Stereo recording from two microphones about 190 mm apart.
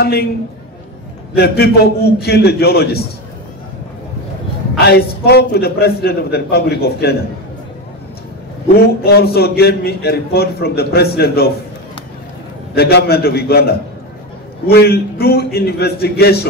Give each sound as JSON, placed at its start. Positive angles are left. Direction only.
{"t": 0.0, "sound": "a man's voice", "side_deg": 55}
{"t": 1.3, "sound": "a man's voice", "side_deg": 55}
{"t": 4.7, "sound": "a man's voice", "side_deg": 55}
{"t": 9.0, "sound": "a man's voice", "side_deg": 55}
{"t": 12.7, "sound": "a man's voice", "side_deg": 55}